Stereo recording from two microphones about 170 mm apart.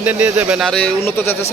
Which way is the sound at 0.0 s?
10° right (ahead or behind).